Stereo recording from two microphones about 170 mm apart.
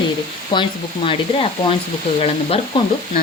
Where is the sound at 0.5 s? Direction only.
25° left (ahead or behind).